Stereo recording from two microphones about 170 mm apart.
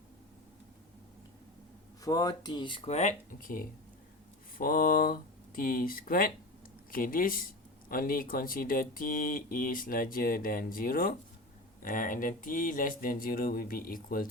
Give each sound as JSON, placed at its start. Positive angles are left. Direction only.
{"t": 2.0, "sound": "speech", "side_deg": 20}